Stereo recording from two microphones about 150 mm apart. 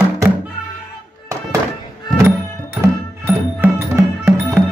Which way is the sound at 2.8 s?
15° right (ahead or behind).